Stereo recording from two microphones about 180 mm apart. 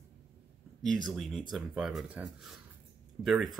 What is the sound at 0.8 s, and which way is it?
Speech, centre (ahead or behind).